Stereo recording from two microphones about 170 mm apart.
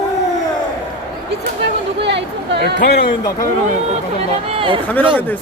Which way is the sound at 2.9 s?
70° left (ahead or behind).